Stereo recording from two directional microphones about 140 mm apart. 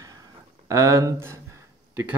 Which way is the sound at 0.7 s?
20° right (ahead or behind).